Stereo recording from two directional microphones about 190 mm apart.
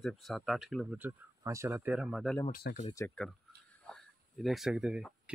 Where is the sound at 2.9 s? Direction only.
10° left (ahead or behind).